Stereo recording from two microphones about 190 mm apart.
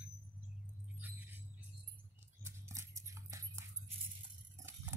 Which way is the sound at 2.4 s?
15° right (ahead or behind).